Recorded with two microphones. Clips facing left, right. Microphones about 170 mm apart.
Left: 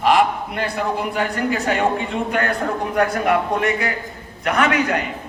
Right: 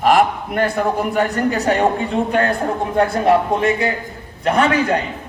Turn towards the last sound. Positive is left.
turn(degrees=-30)  # may be behind; listen again after turning